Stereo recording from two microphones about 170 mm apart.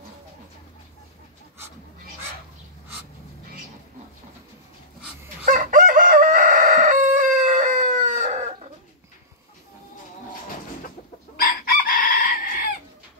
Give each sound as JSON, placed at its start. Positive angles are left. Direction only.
{"t": 5.5, "sound": "chicken", "side_deg": -50}
{"t": 11.3, "sound": "chicken", "side_deg": 55}